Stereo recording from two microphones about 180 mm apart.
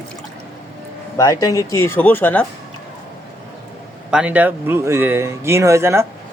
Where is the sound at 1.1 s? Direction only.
20° left (ahead or behind).